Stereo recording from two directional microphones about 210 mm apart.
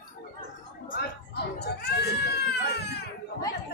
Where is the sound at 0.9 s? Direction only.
50° left (ahead or behind).